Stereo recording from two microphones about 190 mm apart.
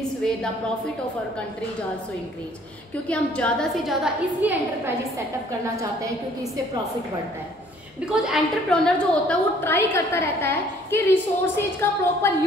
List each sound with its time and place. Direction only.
3.1 s a woman's voice: 5° left (ahead or behind); by 6.6 s 15° right (ahead or behind)
8.0 s a woman's voice: centre (ahead or behind); by 12.4 s 15° left (ahead or behind)